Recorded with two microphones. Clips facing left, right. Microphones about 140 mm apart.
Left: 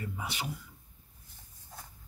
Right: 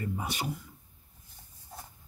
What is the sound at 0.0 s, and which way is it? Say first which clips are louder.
Speech: right 4 dB; 45° right (ahead or behind).